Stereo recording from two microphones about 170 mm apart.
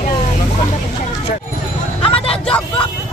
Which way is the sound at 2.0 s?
35° left (ahead or behind).